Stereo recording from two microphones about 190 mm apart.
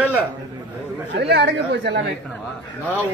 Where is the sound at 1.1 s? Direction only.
65° right (ahead or behind).